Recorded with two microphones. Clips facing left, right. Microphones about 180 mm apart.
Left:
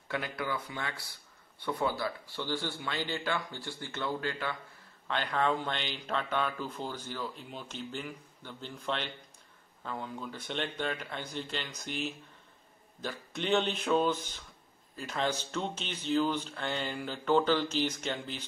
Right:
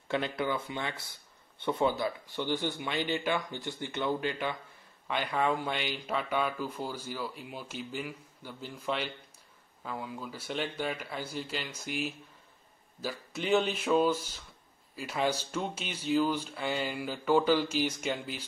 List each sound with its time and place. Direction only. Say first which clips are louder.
0.1 s speech: right 4 dB; 25° right (ahead or behind); by 18.4 s 10° right (ahead or behind)